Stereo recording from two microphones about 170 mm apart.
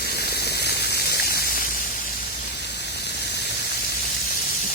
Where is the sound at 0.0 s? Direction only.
65° left (ahead or behind).